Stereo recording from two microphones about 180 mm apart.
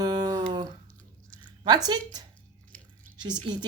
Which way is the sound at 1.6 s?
20° right (ahead or behind).